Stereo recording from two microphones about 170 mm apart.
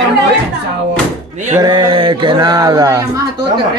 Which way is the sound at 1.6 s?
25° right (ahead or behind).